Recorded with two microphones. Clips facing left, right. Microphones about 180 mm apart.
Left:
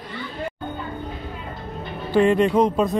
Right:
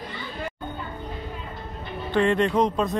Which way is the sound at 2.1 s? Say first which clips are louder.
Left 4 dB; 5° left (ahead or behind).